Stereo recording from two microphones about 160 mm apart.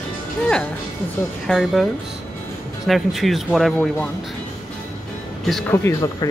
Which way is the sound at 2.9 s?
Centre (ahead or behind).